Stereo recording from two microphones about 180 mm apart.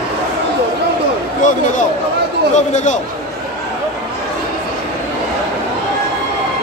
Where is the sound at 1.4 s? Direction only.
45° left (ahead or behind).